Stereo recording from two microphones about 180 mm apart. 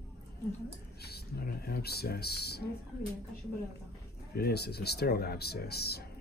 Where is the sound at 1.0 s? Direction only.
60° left (ahead or behind).